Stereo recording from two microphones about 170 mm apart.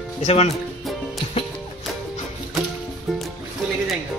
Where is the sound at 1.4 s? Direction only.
30° left (ahead or behind).